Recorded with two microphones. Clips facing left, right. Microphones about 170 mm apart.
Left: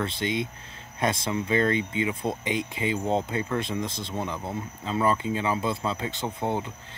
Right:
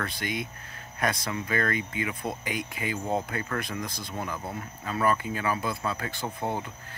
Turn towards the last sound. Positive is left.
turn(degrees=20)  # may be behind; listen again after turning